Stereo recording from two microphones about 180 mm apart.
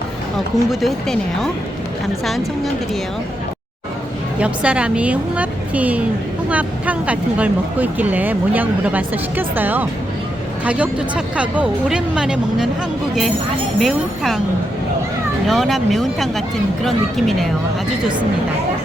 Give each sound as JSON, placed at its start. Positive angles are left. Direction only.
{"t": 0.3, "sound": "speech", "side_deg": 0}
{"t": 4.4, "sound": "speech", "side_deg": -5}
{"t": 13.7, "sound": "speech", "side_deg": 0}
{"t": 15.4, "sound": "speech", "side_deg": 0}